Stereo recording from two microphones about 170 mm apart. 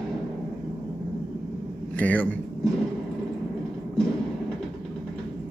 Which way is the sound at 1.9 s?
10° left (ahead or behind).